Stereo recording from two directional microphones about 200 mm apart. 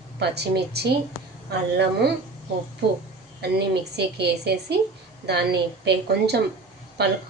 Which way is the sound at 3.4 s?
55° right (ahead or behind).